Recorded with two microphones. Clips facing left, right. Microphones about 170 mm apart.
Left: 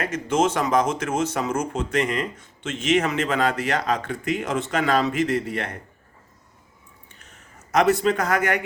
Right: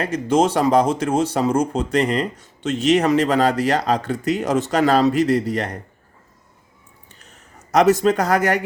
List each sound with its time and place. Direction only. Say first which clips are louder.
0.0 s speech: right 4 dB; 35° right (ahead or behind)
7.2 s speech: right 3 dB; 35° right (ahead or behind)